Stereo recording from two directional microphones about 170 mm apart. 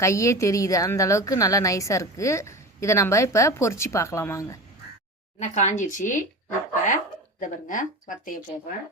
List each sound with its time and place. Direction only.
0.0 s a woman's voice: 15° left (ahead or behind)
5.4 s speech: 45° left (ahead or behind)